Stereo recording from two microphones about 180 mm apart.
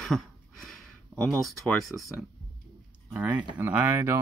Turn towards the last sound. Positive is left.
turn(degrees=-10)  # may be behind; listen again after turning